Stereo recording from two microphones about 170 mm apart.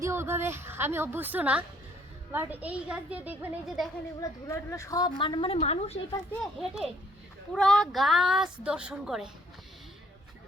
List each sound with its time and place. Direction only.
0.0 s a woman's voice: 15° right (ahead or behind)
4.2 s a woman's voice: 20° left (ahead or behind); by 6.0 s 40° left (ahead or behind)
6.4 s a woman's voice: centre (ahead or behind)